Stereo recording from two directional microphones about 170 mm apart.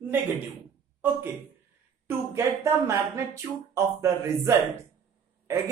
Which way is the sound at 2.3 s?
15° right (ahead or behind).